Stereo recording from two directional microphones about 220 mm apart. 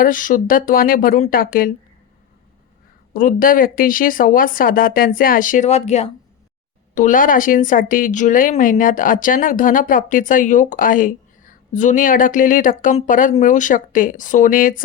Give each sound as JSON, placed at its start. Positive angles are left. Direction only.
{"t": 0.0, "sound": "speech", "side_deg": 40}
{"t": 3.1, "sound": "speech", "side_deg": 40}